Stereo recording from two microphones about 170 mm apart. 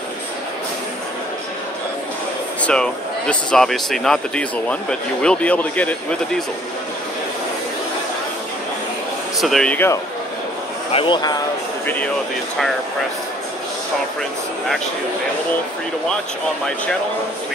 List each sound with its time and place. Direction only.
2.6 s speech: 5° left (ahead or behind)
9.4 s speech: centre (ahead or behind)
10.9 s speech: 30° left (ahead or behind)
11.8 s speech: 10° left (ahead or behind)